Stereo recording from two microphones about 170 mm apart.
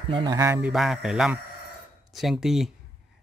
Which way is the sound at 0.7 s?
Centre (ahead or behind).